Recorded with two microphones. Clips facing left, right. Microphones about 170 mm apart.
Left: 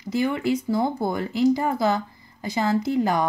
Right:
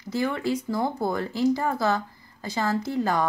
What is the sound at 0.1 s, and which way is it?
Speech, 15° left (ahead or behind).